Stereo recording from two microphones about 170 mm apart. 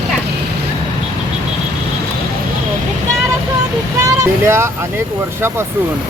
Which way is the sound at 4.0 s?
20° right (ahead or behind).